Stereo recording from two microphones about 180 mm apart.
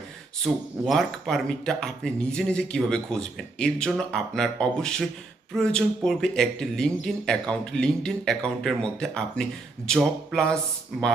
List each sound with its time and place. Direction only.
0.5 s speech: 5° right (ahead or behind)